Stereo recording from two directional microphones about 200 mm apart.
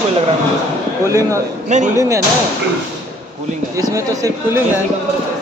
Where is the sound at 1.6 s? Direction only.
35° right (ahead or behind).